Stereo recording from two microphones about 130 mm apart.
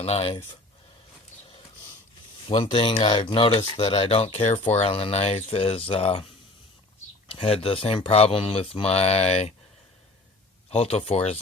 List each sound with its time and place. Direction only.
0.0 s speech: 50° left (ahead or behind)
2.5 s speech: 45° left (ahead or behind)
7.3 s speech: 45° left (ahead or behind)
10.7 s speech: 50° left (ahead or behind)